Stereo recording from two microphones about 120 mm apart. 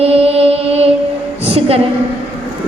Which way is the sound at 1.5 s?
55° right (ahead or behind).